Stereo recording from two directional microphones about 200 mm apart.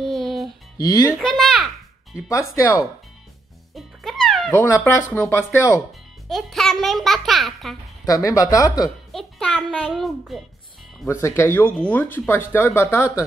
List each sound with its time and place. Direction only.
0.0 s music: centre (ahead or behind)
0.7 s speech: 15° left (ahead or behind)
1.1 s a child's voice: centre (ahead or behind)
2.2 s speech: 15° left (ahead or behind)
3.7 s music: centre (ahead or behind)
4.5 s speech: 10° left (ahead or behind)
6.2 s a child's voice: centre (ahead or behind)
8.0 s speech: 15° left (ahead or behind)
9.1 s a child's voice: 5° left (ahead or behind)
11.1 s speech: 15° left (ahead or behind)